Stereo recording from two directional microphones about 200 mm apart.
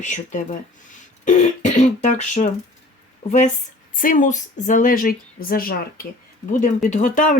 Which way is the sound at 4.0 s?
40° left (ahead or behind).